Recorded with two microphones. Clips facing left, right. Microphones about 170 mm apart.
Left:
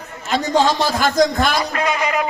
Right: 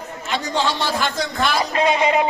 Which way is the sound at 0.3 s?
40° left (ahead or behind).